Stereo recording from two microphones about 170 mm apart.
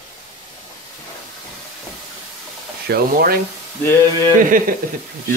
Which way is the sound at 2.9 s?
60° right (ahead or behind).